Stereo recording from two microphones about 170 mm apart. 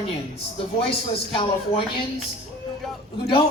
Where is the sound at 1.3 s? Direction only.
30° left (ahead or behind).